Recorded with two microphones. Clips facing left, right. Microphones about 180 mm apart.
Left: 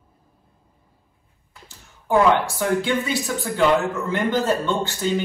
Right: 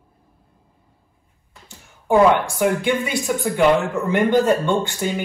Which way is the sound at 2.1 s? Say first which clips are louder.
Right 3 dB; 15° right (ahead or behind).